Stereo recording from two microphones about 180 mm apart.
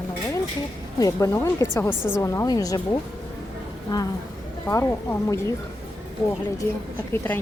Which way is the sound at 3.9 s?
20° left (ahead or behind).